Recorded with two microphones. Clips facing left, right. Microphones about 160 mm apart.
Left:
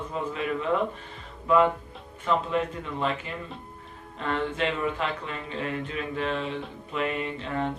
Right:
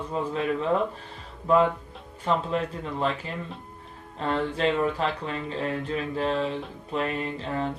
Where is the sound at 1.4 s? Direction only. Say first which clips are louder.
Even; 35° right (ahead or behind).